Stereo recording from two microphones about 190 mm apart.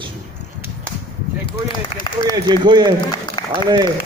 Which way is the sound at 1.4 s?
25° left (ahead or behind).